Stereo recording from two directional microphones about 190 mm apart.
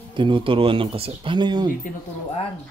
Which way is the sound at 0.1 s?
25° right (ahead or behind).